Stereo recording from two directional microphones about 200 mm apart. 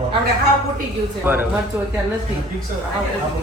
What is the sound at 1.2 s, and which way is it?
Speech, 10° right (ahead or behind).